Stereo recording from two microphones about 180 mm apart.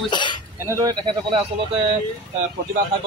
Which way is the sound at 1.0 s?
30° right (ahead or behind).